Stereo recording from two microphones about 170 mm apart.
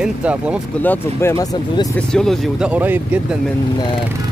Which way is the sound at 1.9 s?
5° left (ahead or behind).